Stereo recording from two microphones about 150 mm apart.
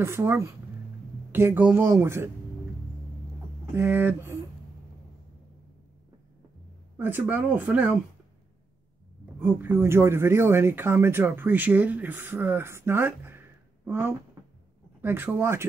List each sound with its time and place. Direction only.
0.0 s speech: 15° right (ahead or behind)
3.7 s speech: 15° right (ahead or behind)
7.0 s speech: 10° right (ahead or behind)
9.4 s speech: 15° right (ahead or behind)